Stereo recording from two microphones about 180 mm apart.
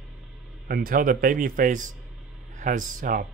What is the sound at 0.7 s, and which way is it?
Speech, 55° right (ahead or behind).